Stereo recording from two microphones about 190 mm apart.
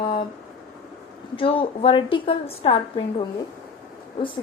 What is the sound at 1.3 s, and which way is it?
A woman's voice, 30° left (ahead or behind).